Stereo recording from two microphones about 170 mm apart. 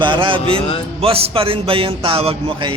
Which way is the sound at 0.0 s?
30° right (ahead or behind).